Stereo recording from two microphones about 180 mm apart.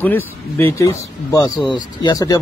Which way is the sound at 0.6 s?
15° left (ahead or behind).